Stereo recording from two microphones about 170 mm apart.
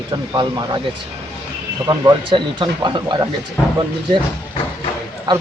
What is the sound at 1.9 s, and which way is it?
Speech, 25° right (ahead or behind).